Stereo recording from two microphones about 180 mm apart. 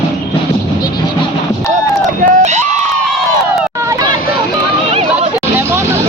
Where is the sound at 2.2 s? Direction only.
40° right (ahead or behind).